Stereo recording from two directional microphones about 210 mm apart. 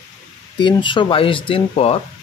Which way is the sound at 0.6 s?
20° left (ahead or behind).